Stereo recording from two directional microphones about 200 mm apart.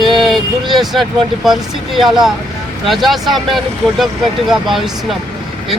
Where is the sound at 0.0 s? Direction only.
Centre (ahead or behind).